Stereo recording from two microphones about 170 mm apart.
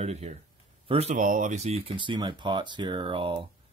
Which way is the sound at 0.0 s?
40° right (ahead or behind).